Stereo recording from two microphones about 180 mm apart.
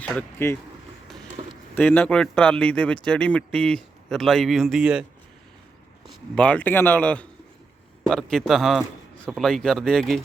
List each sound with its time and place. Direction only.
0.0 s a man's voice: 10° left (ahead or behind)
1.4 s a sound: 35° right (ahead or behind)
1.7 s speech: 10° left (ahead or behind)
6.3 s a man's voice: 5° left (ahead or behind)